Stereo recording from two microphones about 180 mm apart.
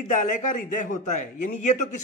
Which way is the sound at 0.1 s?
45° left (ahead or behind).